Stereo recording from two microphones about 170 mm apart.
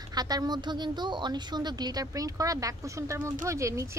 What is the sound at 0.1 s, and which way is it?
A woman's voice, 25° right (ahead or behind).